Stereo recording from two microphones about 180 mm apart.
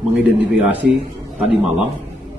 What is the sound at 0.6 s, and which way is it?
Speech, 10° right (ahead or behind).